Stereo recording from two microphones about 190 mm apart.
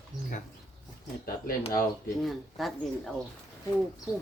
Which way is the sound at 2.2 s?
Centre (ahead or behind).